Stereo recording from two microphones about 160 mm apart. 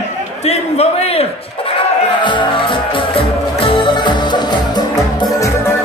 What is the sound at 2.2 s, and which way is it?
Music, 30° left (ahead or behind).